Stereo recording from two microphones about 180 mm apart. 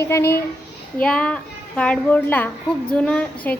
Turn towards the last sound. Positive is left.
turn(degrees=5)  # may be behind; listen again after turning